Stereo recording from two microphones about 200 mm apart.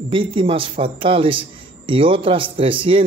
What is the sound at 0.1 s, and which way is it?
A man's voice, 25° right (ahead or behind).